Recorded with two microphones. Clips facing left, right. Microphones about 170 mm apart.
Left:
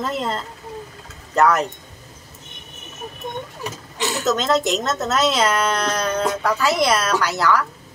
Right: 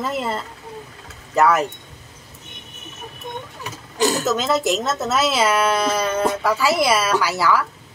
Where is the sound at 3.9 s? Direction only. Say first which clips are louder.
Right 6 dB; 40° right (ahead or behind).